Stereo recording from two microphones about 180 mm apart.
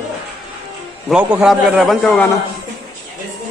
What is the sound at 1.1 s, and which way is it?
A man's voice, 5° right (ahead or behind).